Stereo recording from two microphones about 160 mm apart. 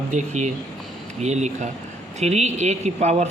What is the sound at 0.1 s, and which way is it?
A man's voice, 50° right (ahead or behind).